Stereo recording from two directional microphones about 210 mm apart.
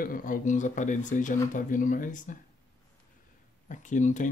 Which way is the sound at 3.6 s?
35° left (ahead or behind).